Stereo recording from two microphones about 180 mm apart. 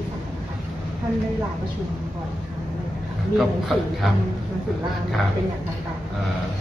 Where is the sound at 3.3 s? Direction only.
Centre (ahead or behind).